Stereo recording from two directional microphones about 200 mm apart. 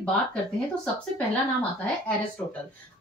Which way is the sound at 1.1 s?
5° left (ahead or behind).